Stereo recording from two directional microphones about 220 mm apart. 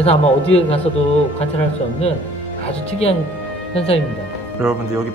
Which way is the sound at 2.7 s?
25° left (ahead or behind).